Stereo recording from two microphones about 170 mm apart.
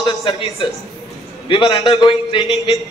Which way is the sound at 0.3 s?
35° left (ahead or behind).